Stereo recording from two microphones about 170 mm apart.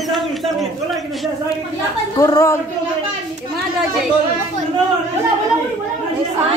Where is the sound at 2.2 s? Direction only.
20° left (ahead or behind).